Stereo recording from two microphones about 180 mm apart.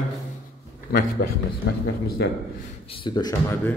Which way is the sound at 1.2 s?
55° left (ahead or behind).